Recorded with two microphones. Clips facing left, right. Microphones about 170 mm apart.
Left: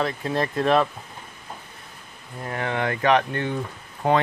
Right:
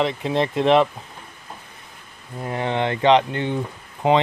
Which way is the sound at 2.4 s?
20° right (ahead or behind).